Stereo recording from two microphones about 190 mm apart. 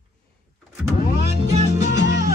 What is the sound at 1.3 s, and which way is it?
Music, 35° right (ahead or behind).